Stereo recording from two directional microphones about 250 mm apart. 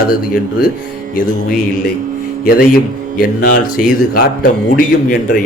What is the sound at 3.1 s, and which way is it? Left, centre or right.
Speech, left.